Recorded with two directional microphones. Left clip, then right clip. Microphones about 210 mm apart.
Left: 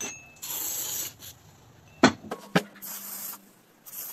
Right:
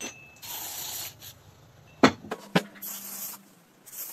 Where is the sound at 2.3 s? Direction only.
10° left (ahead or behind).